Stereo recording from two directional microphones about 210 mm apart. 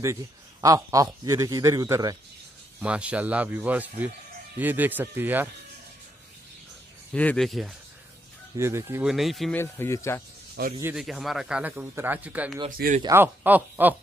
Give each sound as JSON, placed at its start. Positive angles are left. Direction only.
{"t": 0.0, "sound": "speech", "side_deg": -15}
{"t": 2.8, "sound": "speech", "side_deg": -5}
{"t": 7.2, "sound": "speech", "side_deg": 5}
{"t": 8.5, "sound": "speech", "side_deg": -10}
{"t": 9.0, "sound": "speech", "side_deg": 0}
{"t": 9.6, "sound": "speech", "side_deg": 10}
{"t": 10.8, "sound": "speech", "side_deg": -5}
{"t": 12.6, "sound": "speech", "side_deg": -40}
{"t": 13.0, "sound": "speech", "side_deg": -10}